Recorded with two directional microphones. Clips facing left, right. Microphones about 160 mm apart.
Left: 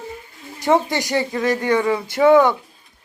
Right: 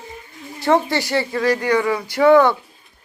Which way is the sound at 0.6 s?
20° left (ahead or behind).